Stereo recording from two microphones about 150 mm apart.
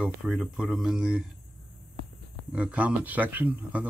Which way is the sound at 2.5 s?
10° right (ahead or behind).